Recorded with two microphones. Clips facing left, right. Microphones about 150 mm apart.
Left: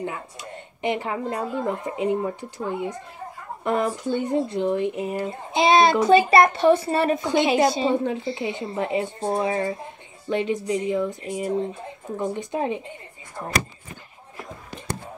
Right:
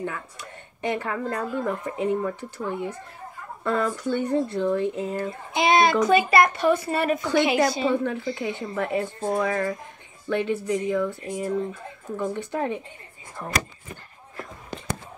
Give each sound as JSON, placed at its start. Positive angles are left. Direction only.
{"t": 0.0, "sound": "speech", "side_deg": 15}